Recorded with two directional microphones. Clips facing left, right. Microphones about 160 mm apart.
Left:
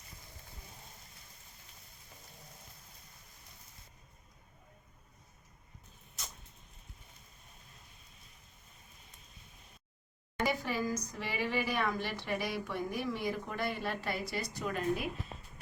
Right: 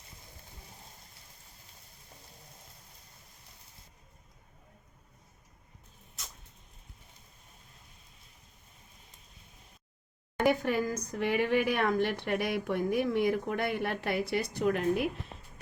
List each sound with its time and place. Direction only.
10.4 s speech: 55° right (ahead or behind)